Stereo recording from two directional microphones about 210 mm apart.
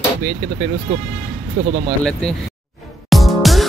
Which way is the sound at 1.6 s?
30° right (ahead or behind).